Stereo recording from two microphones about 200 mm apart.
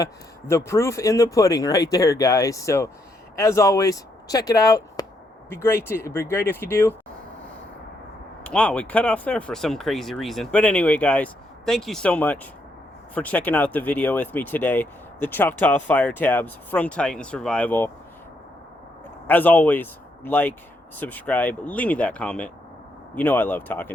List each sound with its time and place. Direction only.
0.0 s speech: 15° left (ahead or behind)
8.4 s speech: 5° left (ahead or behind)
19.3 s speech: 10° left (ahead or behind)